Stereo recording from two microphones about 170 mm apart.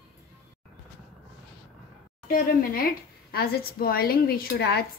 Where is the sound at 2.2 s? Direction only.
55° left (ahead or behind).